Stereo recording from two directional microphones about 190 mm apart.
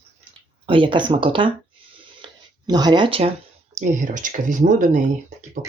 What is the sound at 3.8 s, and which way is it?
Speech, 40° right (ahead or behind).